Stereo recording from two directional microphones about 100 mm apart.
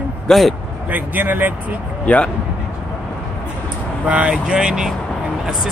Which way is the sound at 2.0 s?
15° left (ahead or behind).